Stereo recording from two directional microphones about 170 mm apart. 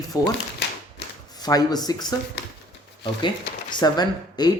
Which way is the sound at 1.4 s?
20° left (ahead or behind).